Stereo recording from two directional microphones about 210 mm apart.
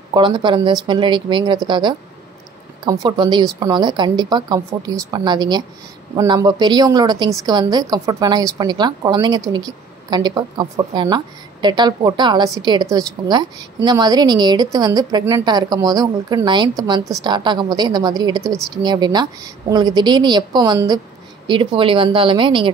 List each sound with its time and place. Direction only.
0.1 s a woman's voice: 20° right (ahead or behind)
18.4 s speech: centre (ahead or behind)
18.8 s a woman's voice: 20° right (ahead or behind)